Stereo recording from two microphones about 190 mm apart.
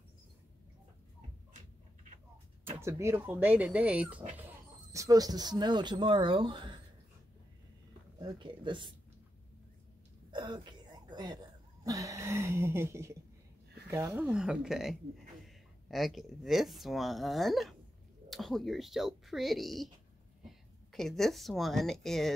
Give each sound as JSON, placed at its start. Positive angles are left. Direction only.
{"t": 2.8, "sound": "speech", "side_deg": -15}
{"t": 4.9, "sound": "speech", "side_deg": -20}
{"t": 8.2, "sound": "speech", "side_deg": -25}
{"t": 10.3, "sound": "throat clearing", "side_deg": -25}
{"t": 13.8, "sound": "speech", "side_deg": -15}